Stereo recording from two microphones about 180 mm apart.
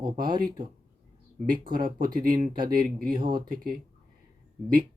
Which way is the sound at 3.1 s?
25° right (ahead or behind).